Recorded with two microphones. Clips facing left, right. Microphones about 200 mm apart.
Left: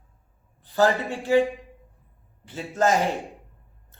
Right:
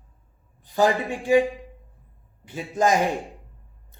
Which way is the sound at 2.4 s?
15° right (ahead or behind).